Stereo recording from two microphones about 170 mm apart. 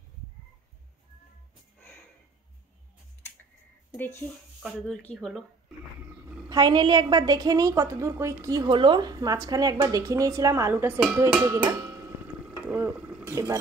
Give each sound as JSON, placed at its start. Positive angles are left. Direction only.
{"t": 3.9, "sound": "speech", "side_deg": 10}
{"t": 6.5, "sound": "a woman's voice", "side_deg": -25}
{"t": 11.4, "sound": "a sound", "side_deg": -20}